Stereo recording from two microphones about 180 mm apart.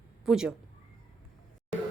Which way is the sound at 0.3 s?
5° right (ahead or behind).